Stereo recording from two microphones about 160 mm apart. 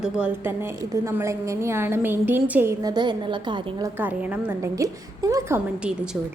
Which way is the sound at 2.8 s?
25° right (ahead or behind).